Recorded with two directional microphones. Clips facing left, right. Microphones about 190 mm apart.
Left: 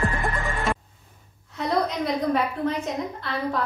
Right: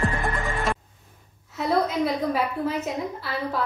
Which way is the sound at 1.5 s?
5° right (ahead or behind).